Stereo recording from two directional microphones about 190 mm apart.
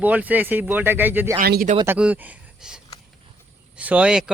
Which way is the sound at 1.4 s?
50° right (ahead or behind).